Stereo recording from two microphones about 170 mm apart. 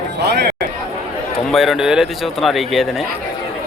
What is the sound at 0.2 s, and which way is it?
Chatter, 75° right (ahead or behind).